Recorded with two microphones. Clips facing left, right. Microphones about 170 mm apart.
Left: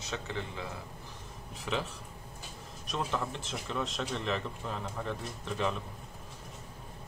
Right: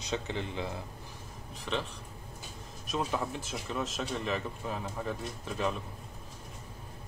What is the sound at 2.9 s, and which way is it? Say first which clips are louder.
A man's voice: right 2 dB; 10° right (ahead or behind).